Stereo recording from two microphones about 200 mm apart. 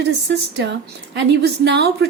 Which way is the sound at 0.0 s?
55° right (ahead or behind).